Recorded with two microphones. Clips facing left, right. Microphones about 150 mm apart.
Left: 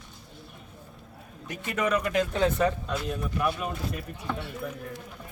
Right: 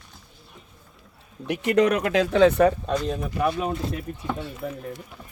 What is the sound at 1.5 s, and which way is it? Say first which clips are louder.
Speech: right 7 dB; 80° right.